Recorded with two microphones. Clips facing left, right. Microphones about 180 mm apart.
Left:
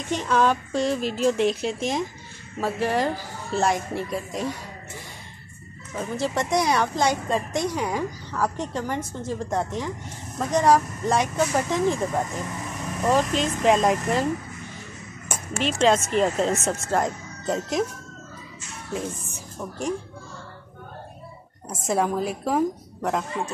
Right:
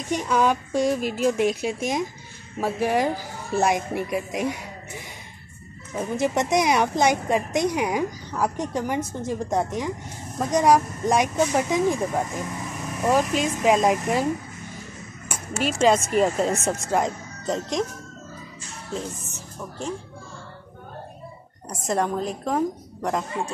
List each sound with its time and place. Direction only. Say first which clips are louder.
0.1 s speech: even; 10° right (ahead or behind)
15.2 s a woman's voice: even; 10° right (ahead or behind)
18.9 s speech: left 2 dB; 15° left (ahead or behind)
21.8 s a woman's voice: left 1 dB; 5° left (ahead or behind)